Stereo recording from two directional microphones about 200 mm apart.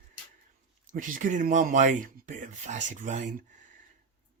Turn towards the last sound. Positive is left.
turn(degrees=-40)  # may be behind; listen again after turning